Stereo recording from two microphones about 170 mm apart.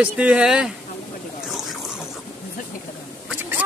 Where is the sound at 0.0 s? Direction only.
5° right (ahead or behind).